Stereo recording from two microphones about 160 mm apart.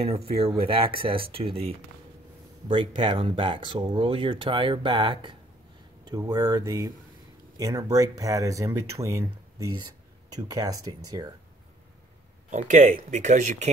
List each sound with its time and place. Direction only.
0.4 s speech: 35° right (ahead or behind)
12.4 s speech: 50° right (ahead or behind)